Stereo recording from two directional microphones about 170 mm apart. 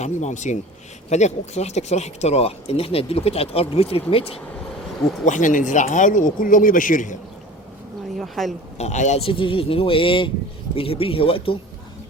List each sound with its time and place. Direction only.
0.0 s speech: 45° left (ahead or behind)
5.2 s speech: 45° left (ahead or behind)
8.2 s a woman's voice: centre (ahead or behind)
8.8 s speech: 45° left (ahead or behind)